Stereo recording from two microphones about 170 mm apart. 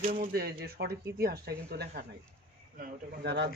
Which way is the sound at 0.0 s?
55° right (ahead or behind).